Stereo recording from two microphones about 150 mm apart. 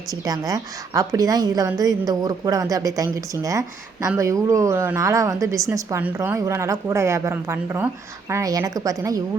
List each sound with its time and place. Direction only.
0.1 s a woman's voice: 25° right (ahead or behind)